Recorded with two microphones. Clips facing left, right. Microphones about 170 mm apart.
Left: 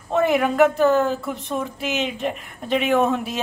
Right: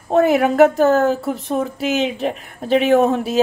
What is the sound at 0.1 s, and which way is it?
Speech, 40° right (ahead or behind).